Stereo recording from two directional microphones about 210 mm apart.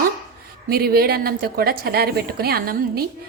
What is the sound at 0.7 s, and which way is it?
A woman's voice, 45° right (ahead or behind).